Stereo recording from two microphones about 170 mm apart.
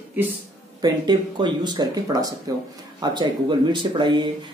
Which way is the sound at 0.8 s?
25° right (ahead or behind).